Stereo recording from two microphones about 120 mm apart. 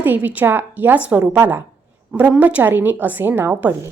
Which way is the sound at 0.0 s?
15° right (ahead or behind).